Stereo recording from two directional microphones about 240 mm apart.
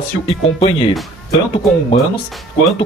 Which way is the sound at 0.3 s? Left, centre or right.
Left.